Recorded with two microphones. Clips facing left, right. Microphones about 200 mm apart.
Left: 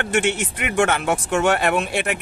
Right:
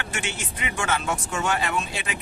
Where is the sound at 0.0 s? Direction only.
65° left (ahead or behind).